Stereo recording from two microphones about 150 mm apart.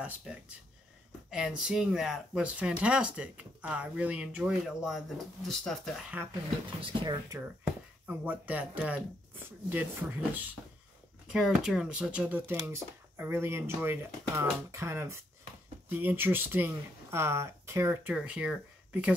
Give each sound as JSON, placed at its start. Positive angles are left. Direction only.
{"t": 0.0, "sound": "speech", "side_deg": -5}
{"t": 6.8, "sound": "speech", "side_deg": -35}
{"t": 8.1, "sound": "speech", "side_deg": -10}